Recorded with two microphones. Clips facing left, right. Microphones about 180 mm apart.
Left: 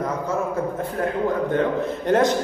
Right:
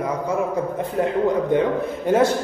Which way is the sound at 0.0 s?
10° right (ahead or behind).